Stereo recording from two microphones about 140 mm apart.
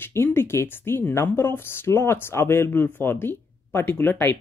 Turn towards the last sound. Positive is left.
turn(degrees=15)  # may be behind; listen again after turning